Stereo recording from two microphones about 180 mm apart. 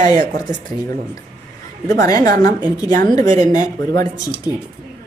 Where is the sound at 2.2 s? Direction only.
55° right (ahead or behind).